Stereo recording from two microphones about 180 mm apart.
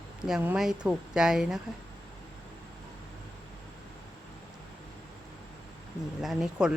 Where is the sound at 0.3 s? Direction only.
5° right (ahead or behind).